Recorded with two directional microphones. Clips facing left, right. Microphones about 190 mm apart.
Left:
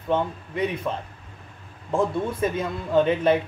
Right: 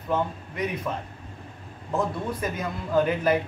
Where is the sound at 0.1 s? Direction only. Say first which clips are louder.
Left 2 dB; 30° left (ahead or behind).